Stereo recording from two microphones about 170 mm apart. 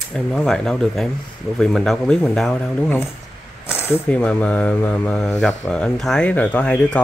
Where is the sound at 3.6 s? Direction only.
15° left (ahead or behind).